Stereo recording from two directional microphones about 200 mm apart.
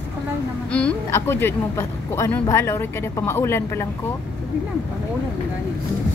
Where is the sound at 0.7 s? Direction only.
5° left (ahead or behind).